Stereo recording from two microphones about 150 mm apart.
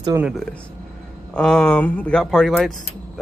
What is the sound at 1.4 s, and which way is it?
Speech, 5° left (ahead or behind).